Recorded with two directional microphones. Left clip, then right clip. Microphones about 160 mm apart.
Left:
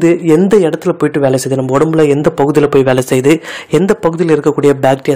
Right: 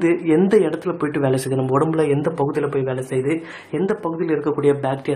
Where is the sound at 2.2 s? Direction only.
50° left (ahead or behind).